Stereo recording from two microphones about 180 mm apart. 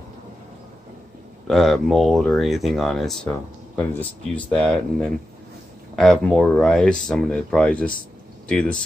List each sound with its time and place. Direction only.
1.5 s speech: centre (ahead or behind)